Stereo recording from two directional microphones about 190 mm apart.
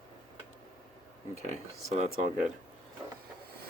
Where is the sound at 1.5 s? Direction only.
35° right (ahead or behind).